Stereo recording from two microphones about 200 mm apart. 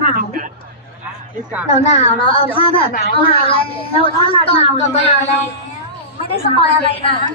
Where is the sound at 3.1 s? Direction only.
30° left (ahead or behind).